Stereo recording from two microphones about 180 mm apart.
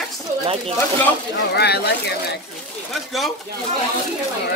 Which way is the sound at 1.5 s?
65° left (ahead or behind).